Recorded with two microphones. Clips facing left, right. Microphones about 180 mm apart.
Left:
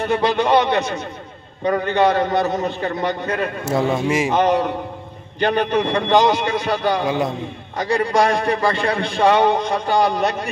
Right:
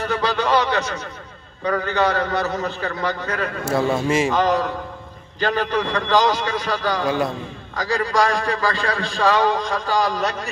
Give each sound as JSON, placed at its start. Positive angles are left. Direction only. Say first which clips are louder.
{"t": 0.0, "sound": "a man's voice", "louder": "left 4 dB", "side_deg": 20}